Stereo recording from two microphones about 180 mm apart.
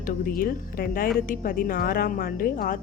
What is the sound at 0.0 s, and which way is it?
A woman's voice, 50° left (ahead or behind).